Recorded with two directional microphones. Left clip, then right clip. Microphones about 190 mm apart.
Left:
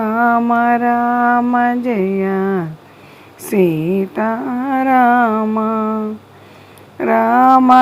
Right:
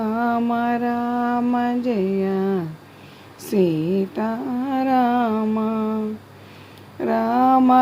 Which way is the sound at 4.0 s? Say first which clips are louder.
Left 6 dB; 15° left (ahead or behind).